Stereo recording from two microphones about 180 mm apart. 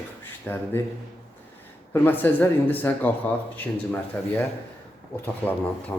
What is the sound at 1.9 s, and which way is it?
Speech, 10° left (ahead or behind).